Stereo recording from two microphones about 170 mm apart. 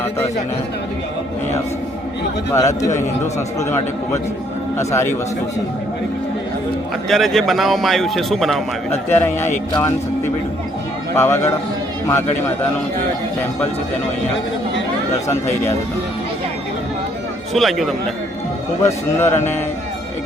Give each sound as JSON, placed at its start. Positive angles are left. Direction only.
{"t": 2.5, "sound": "speech", "side_deg": 15}
{"t": 7.1, "sound": "a man's voice", "side_deg": 0}
{"t": 9.0, "sound": "speech", "side_deg": 10}
{"t": 11.1, "sound": "a man's voice", "side_deg": 15}
{"t": 17.5, "sound": "a man's voice", "side_deg": 0}
{"t": 18.9, "sound": "speech", "side_deg": 15}